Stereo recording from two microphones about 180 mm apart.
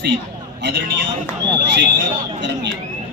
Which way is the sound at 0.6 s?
75° right (ahead or behind).